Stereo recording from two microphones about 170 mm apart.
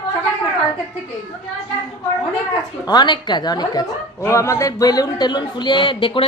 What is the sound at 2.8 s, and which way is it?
A woman's voice, 25° left (ahead or behind).